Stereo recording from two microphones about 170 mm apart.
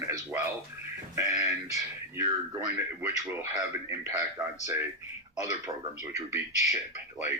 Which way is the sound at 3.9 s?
20° right (ahead or behind).